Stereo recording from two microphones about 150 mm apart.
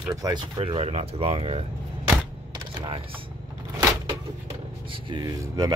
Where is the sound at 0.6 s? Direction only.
40° right (ahead or behind).